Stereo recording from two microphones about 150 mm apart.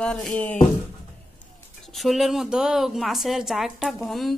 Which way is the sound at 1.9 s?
Centre (ahead or behind).